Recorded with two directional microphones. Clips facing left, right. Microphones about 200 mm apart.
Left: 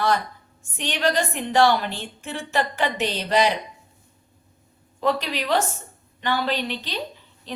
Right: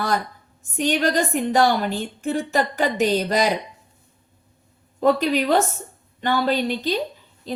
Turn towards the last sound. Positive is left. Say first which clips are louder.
# right 6 dB
turn(degrees=-45)  # may be behind; listen again after turning